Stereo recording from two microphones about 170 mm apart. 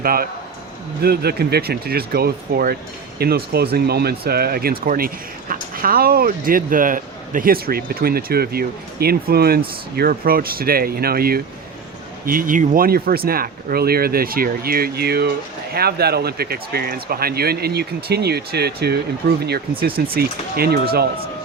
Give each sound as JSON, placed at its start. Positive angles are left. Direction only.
{"t": 0.0, "sound": "speech", "side_deg": -60}